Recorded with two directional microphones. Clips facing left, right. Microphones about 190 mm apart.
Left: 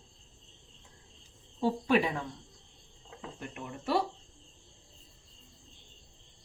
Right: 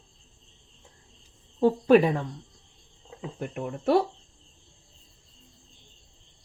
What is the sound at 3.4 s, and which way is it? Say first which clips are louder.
Speech: right 10 dB; 50° right (ahead or behind).